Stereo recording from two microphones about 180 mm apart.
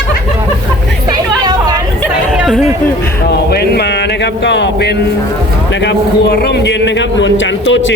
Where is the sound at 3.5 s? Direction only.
65° left (ahead or behind).